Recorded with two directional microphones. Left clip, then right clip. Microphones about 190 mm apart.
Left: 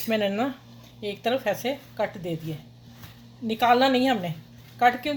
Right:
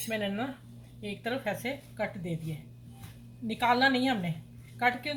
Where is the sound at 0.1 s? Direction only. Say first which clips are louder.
Left 9 dB; 55° left (ahead or behind).